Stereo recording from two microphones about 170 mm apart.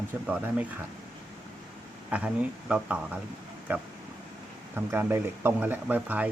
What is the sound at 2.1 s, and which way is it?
Speech, 5° right (ahead or behind).